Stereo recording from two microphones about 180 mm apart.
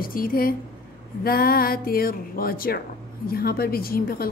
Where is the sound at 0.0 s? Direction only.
50° left (ahead or behind).